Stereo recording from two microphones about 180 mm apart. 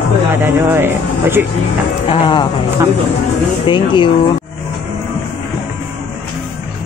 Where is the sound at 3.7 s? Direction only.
25° left (ahead or behind).